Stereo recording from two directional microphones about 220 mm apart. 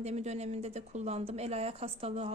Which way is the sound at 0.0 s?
30° right (ahead or behind).